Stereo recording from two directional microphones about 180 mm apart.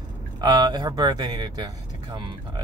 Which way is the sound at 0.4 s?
25° right (ahead or behind).